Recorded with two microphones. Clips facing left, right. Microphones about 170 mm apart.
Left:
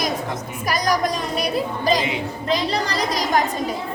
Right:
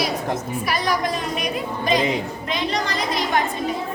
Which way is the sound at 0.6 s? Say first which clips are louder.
Left 4 dB; 40° left (ahead or behind).